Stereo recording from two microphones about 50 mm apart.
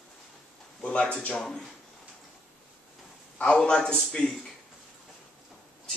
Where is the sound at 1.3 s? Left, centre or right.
Centre.